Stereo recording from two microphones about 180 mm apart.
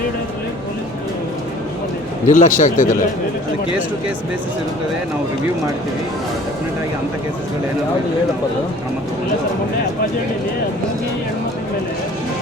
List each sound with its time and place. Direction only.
2.2 s a man's voice: 45° left (ahead or behind)